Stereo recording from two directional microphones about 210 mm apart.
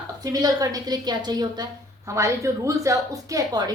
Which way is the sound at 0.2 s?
15° right (ahead or behind).